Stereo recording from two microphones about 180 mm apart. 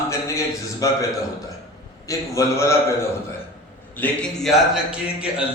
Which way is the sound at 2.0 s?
15° left (ahead or behind).